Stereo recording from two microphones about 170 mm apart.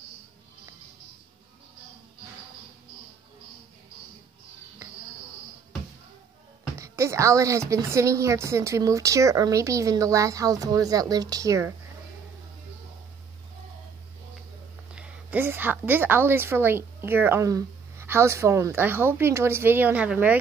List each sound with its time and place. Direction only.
6.8 s a woman's voice: 15° right (ahead or behind)
15.0 s a woman's voice: 10° right (ahead or behind)